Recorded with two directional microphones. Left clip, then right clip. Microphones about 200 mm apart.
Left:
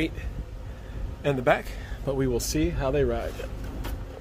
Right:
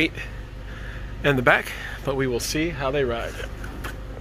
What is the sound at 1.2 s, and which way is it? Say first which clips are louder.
Speech: right 5 dB; centre (ahead or behind).